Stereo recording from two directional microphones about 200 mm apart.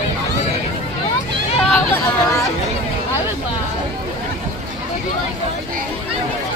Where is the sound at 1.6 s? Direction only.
5° left (ahead or behind).